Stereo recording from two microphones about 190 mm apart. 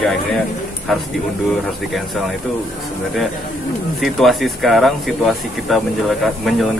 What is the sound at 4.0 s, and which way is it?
Speech, centre (ahead or behind).